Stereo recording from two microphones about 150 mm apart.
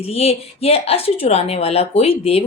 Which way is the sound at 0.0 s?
40° left (ahead or behind).